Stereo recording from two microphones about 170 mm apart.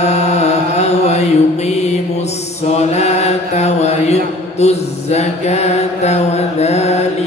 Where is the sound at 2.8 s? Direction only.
40° left (ahead or behind).